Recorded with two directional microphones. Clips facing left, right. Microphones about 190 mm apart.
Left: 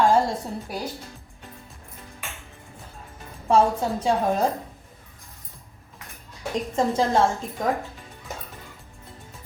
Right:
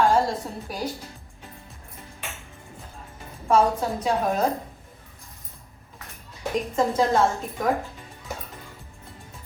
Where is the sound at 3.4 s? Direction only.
30° left (ahead or behind).